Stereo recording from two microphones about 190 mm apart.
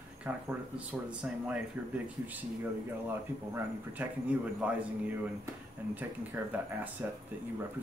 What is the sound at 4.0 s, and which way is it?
Speech, 5° right (ahead or behind).